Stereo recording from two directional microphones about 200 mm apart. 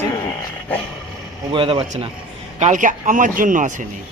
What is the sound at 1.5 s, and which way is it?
Speech, 25° right (ahead or behind).